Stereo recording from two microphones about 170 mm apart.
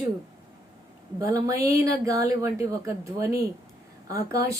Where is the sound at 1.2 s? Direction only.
20° right (ahead or behind).